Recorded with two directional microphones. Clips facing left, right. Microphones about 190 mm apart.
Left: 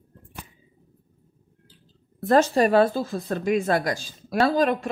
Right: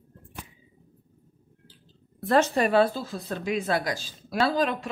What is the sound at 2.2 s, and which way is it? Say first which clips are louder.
Speech: left 4 dB; 40° left (ahead or behind).